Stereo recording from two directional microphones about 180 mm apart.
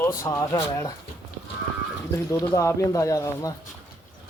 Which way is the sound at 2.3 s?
15° left (ahead or behind).